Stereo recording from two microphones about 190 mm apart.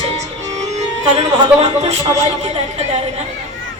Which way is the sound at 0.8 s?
35° right (ahead or behind).